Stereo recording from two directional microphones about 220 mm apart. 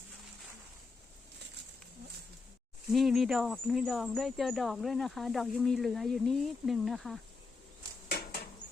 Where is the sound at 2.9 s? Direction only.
Centre (ahead or behind).